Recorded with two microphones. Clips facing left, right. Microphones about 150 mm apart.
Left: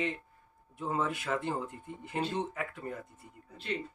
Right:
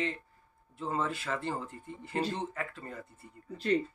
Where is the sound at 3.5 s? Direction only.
40° right (ahead or behind).